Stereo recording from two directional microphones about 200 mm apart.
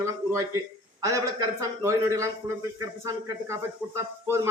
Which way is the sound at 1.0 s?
15° right (ahead or behind).